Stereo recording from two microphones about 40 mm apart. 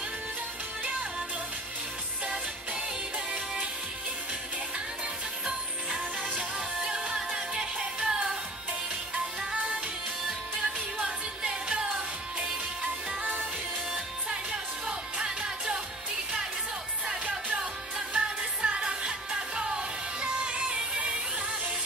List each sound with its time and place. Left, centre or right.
5.5 s music: centre
9.4 s music: right
17.6 s music: right